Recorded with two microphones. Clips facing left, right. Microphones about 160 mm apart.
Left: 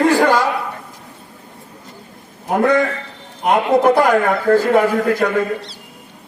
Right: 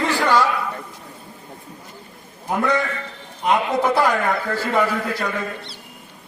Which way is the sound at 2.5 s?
55° left (ahead or behind).